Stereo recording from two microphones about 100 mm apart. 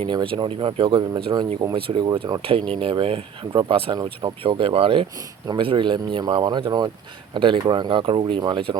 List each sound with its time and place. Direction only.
0.0 s speech: 55° right (ahead or behind)
2.4 s speech: 65° right (ahead or behind)
5.5 s speech: 50° right (ahead or behind)
7.3 s speech: 60° right (ahead or behind)